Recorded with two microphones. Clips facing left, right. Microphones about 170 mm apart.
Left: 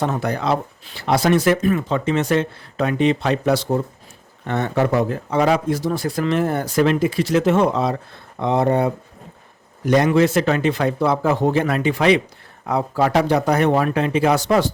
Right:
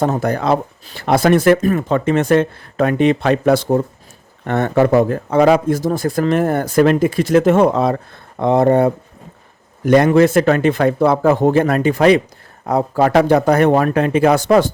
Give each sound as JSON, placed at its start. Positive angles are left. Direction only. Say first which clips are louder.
{"t": 0.0, "sound": "speech", "louder": "right 5 dB", "side_deg": -45}